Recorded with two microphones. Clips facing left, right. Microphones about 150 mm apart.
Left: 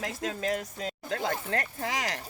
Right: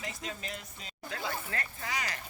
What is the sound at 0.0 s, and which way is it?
Speech, 90° left.